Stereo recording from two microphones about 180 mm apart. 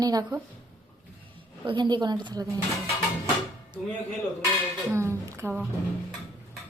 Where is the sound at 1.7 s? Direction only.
25° right (ahead or behind).